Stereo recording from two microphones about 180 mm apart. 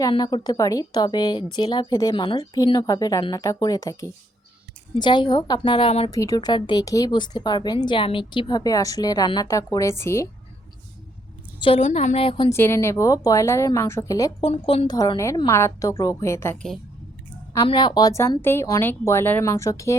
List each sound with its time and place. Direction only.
0.0 s a woman's voice: 25° left (ahead or behind)
6.1 s a woman's voice: 20° left (ahead or behind)
11.6 s a woman's voice: 35° left (ahead or behind)
12.5 s speech: 15° left (ahead or behind)
14.4 s a woman's voice: 35° left (ahead or behind)
14.8 s speech: 20° left (ahead or behind)
17.7 s speech: 25° left (ahead or behind)